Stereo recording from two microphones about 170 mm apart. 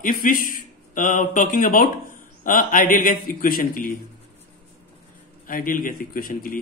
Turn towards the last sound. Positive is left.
turn(degrees=55)  # may be behind; listen again after turning